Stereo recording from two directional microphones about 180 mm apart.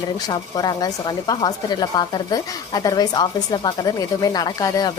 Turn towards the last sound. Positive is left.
turn(degrees=20)  # may be behind; listen again after turning